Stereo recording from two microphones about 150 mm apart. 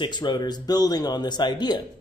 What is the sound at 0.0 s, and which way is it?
A man's voice, 30° left (ahead or behind).